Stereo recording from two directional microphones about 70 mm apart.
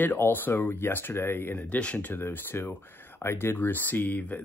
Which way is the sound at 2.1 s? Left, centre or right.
Left.